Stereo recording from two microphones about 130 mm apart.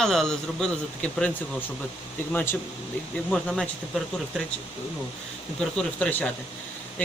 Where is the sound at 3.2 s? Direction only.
5° left (ahead or behind).